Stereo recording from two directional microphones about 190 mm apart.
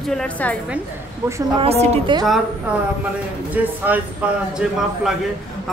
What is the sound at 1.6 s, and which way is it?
Speech, 30° right (ahead or behind).